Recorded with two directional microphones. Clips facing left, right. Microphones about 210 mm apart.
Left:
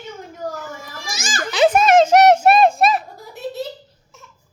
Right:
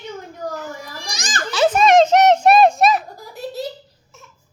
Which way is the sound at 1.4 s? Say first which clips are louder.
Left 2 dB; 15° left (ahead or behind).